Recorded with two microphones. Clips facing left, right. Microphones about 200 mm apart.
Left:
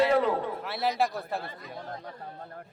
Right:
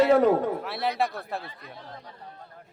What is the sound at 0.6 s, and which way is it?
Speech, centre (ahead or behind).